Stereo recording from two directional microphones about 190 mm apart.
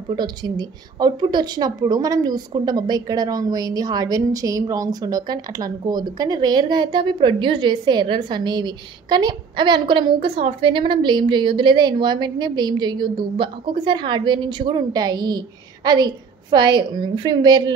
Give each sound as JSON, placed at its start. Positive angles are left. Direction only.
{"t": 0.1, "sound": "a woman's voice", "side_deg": -20}